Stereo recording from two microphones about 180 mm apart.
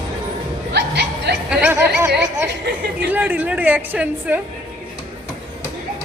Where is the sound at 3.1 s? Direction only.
10° right (ahead or behind).